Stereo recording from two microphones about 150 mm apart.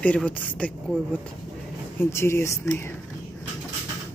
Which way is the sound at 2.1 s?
15° left (ahead or behind).